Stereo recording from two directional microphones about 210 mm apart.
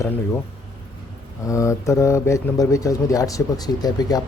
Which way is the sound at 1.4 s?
15° left (ahead or behind).